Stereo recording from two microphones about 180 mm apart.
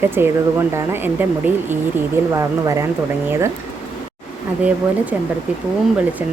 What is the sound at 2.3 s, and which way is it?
Speech, 20° right (ahead or behind).